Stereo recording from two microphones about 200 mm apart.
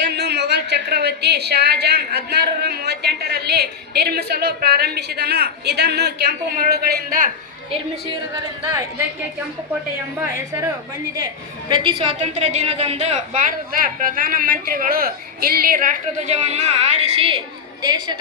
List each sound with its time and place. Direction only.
0.0 s a woman's voice: 55° right (ahead or behind)
8.6 s a woman's voice: 15° right (ahead or behind)
10.2 s a woman's voice: 15° right (ahead or behind)
11.7 s a woman's voice: 25° right (ahead or behind)